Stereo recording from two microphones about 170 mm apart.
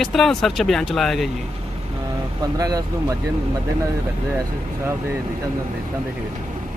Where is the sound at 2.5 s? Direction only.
20° right (ahead or behind).